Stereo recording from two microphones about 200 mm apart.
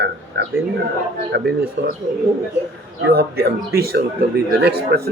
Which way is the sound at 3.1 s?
50° right (ahead or behind).